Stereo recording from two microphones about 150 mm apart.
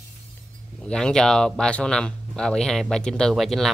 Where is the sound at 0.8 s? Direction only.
5° left (ahead or behind).